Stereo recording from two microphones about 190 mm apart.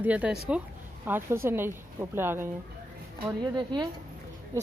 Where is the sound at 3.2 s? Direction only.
20° right (ahead or behind).